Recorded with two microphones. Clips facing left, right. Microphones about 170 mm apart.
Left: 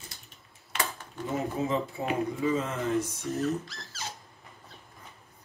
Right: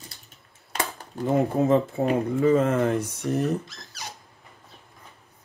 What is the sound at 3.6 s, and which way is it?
Speech, 20° right (ahead or behind).